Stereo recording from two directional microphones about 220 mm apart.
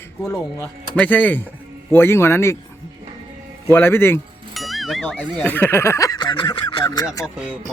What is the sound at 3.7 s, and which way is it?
Speech, 10° left (ahead or behind).